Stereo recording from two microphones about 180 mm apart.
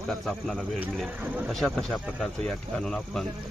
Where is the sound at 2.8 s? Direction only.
5° left (ahead or behind).